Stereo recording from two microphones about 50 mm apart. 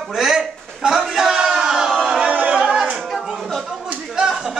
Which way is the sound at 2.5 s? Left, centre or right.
Centre.